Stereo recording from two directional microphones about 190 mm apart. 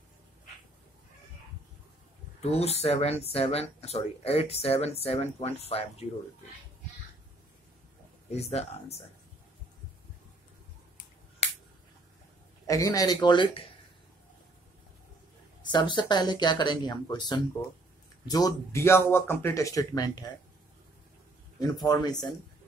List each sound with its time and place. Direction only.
2.4 s speech: 35° left (ahead or behind)
8.3 s speech: 35° left (ahead or behind)
12.6 s speech: 15° left (ahead or behind)
15.6 s speech: 25° left (ahead or behind)
21.5 s speech: 20° left (ahead or behind)